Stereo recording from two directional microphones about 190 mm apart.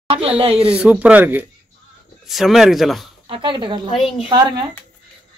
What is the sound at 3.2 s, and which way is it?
Speech, 25° right (ahead or behind).